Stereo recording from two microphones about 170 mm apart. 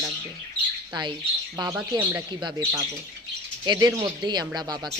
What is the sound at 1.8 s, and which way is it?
Speech, 10° right (ahead or behind).